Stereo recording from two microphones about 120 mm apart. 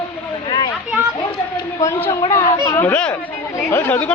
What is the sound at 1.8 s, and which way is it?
A woman's voice, 25° left (ahead or behind).